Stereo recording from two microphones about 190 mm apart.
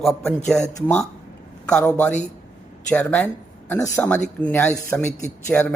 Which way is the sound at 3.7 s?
15° left (ahead or behind).